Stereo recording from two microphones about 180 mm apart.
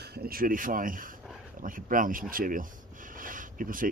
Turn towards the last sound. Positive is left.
turn(degrees=-50)  # may be behind; listen again after turning